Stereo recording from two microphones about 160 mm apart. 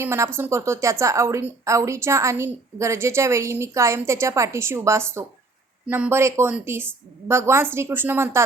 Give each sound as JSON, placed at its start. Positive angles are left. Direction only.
{"t": 0.0, "sound": "a woman's voice", "side_deg": -15}